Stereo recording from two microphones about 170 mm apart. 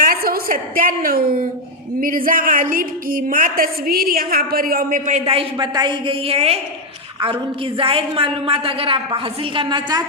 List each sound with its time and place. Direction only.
0.0 s a woman's voice: 60° right (ahead or behind)
5.2 s a woman's voice: 35° right (ahead or behind)
7.8 s a woman's voice: 35° right (ahead or behind)